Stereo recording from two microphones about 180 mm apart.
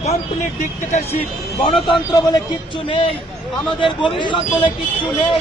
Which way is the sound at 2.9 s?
30° left (ahead or behind).